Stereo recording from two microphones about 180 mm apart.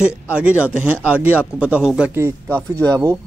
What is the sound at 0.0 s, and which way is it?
A man's voice, 5° right (ahead or behind).